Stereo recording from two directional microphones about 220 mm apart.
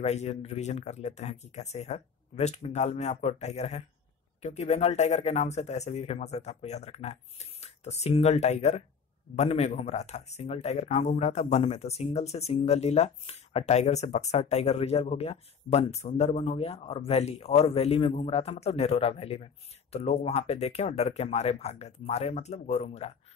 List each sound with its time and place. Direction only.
0.0 s speech: 30° left (ahead or behind)